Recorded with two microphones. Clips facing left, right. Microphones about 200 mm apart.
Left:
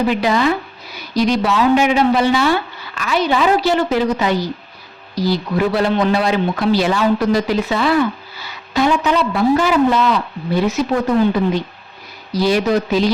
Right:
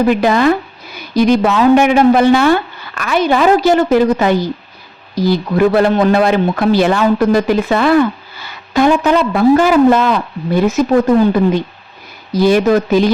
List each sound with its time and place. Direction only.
0.1 s speech: 50° right (ahead or behind)
12.3 s speech: 50° right (ahead or behind)